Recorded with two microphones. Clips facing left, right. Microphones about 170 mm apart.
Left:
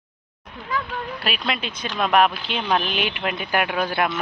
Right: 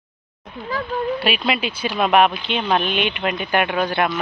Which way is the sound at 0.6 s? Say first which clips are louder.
Right 3 dB; 35° right (ahead or behind).